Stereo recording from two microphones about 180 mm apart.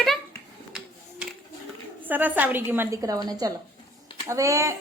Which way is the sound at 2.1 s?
10° right (ahead or behind).